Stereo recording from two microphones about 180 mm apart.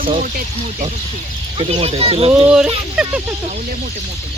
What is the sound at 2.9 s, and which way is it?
Speech, 5° right (ahead or behind).